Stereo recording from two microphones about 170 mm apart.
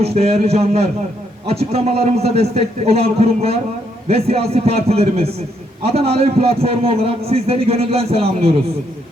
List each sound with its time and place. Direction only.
0.0 s a man's voice: 35° right (ahead or behind)